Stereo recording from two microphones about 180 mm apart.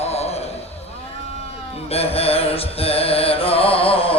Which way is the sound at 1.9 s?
35° left (ahead or behind).